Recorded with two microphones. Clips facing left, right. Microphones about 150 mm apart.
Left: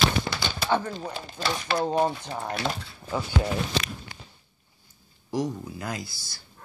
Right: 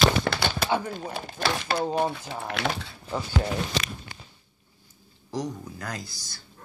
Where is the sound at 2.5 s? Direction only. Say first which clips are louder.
Right 1 dB; 70° right (ahead or behind).